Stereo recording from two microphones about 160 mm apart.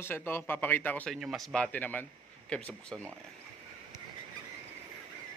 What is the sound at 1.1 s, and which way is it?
Speech, centre (ahead or behind).